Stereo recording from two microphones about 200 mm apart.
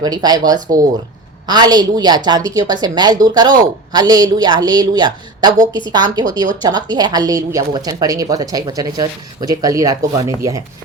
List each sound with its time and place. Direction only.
0.0 s a woman's voice: 20° right (ahead or behind)